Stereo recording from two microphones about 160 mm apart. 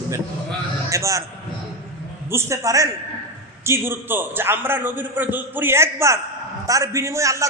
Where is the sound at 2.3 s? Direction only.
15° right (ahead or behind).